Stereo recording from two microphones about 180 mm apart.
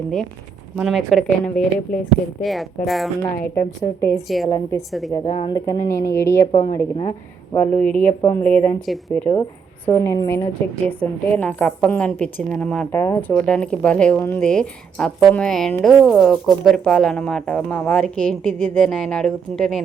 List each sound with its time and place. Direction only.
0.8 s a woman's voice: centre (ahead or behind)
4.1 s a woman's voice: centre (ahead or behind)
4.4 s speech: 20° left (ahead or behind)
4.9 s a woman's voice: centre (ahead or behind)
5.1 s speech: 30° left (ahead or behind)
7.6 s a woman's voice: 5° left (ahead or behind)